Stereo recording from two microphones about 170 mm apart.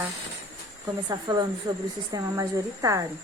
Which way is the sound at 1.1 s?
25° right (ahead or behind).